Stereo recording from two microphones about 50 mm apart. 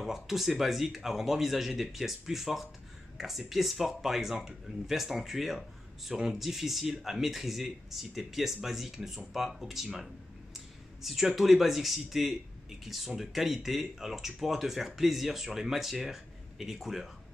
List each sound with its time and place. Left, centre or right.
0.0 s speech: centre